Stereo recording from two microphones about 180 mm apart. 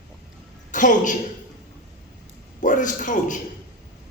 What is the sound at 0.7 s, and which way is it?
Speech, 45° left (ahead or behind).